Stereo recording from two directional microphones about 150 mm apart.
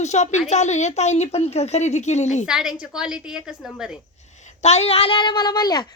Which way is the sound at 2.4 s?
5° right (ahead or behind).